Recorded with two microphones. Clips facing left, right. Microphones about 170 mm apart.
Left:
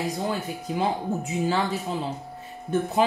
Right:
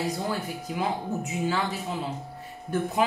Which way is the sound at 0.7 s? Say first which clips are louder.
Left 3 dB; 30° left (ahead or behind).